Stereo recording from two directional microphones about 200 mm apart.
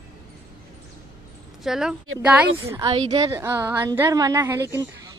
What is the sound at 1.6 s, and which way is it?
A woman's voice, centre (ahead or behind).